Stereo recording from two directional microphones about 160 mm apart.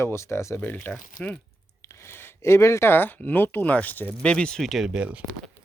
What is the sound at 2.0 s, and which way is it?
Speech, 15° left (ahead or behind).